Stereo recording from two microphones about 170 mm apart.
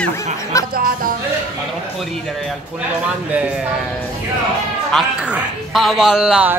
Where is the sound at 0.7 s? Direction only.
55° right (ahead or behind).